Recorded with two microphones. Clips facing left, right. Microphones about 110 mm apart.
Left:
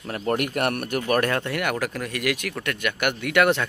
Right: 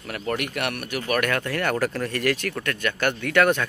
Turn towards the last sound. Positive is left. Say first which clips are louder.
# even
turn(degrees=15)  # may be behind; listen again after turning